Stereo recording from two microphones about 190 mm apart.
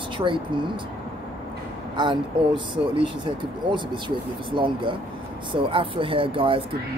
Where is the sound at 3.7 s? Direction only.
25° right (ahead or behind).